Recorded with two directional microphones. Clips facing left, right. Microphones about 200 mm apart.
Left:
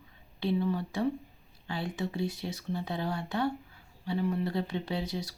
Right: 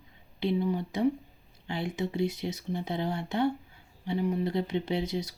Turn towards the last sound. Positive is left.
turn(degrees=-20)  # may be behind; listen again after turning